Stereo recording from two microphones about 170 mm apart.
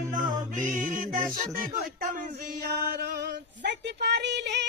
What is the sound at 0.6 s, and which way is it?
Music, 50° right (ahead or behind).